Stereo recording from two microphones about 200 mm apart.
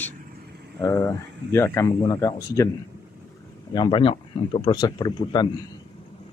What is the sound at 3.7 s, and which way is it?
Speech, 25° left (ahead or behind).